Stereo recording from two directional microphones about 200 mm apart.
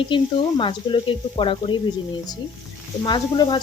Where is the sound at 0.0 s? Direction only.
25° left (ahead or behind).